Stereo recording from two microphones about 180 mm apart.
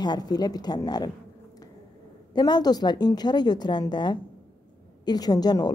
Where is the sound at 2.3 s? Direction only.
25° left (ahead or behind).